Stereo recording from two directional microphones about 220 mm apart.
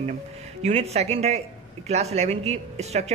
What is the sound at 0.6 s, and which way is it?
Speech, 30° right (ahead or behind).